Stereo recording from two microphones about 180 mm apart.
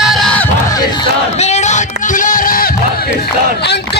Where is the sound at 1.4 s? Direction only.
40° left (ahead or behind).